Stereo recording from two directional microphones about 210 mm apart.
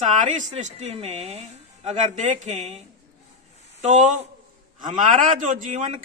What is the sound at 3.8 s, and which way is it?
Speech, 35° right (ahead or behind).